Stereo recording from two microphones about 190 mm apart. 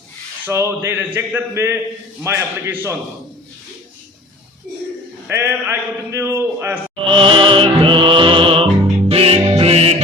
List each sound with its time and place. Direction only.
0.4 s a man's voice: 15° right (ahead or behind)
5.3 s a man's voice: 10° right (ahead or behind)
7.1 s music: 25° right (ahead or behind)